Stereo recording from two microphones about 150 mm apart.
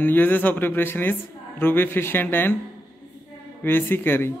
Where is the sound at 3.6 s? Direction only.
15° left (ahead or behind).